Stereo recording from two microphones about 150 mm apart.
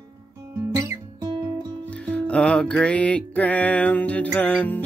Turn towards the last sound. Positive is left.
turn(degrees=10)  # may be behind; listen again after turning